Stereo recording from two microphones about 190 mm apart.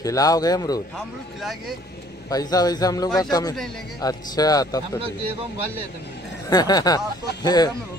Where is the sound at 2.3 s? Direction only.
20° left (ahead or behind).